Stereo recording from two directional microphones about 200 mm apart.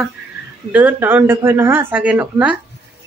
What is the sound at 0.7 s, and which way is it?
Speech, 10° right (ahead or behind).